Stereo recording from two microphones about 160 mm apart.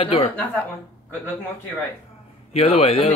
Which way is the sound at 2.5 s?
35° left (ahead or behind).